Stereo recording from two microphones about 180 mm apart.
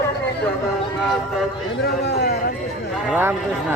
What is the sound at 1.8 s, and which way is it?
Speech, 65° left (ahead or behind).